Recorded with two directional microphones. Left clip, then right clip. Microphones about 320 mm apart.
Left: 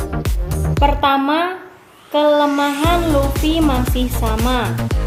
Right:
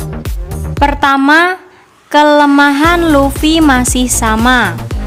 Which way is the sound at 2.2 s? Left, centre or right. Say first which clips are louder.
Right 6 dB; right.